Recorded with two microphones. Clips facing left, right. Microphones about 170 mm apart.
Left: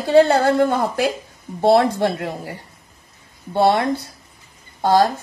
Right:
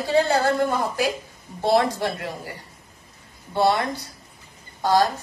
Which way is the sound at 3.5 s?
50° left (ahead or behind).